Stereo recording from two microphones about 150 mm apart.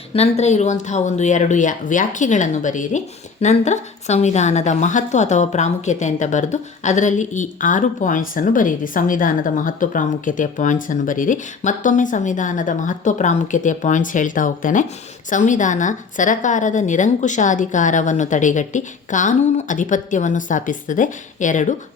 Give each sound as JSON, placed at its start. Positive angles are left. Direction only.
{"t": 0.1, "sound": "a woman's voice", "side_deg": 45}